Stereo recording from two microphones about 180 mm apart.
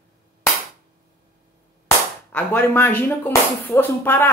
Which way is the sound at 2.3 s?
10° left (ahead or behind).